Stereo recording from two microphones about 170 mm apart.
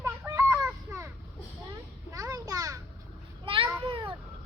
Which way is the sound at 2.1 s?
20° right (ahead or behind).